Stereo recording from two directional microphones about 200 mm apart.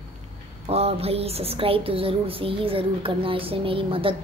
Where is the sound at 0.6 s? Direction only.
30° right (ahead or behind).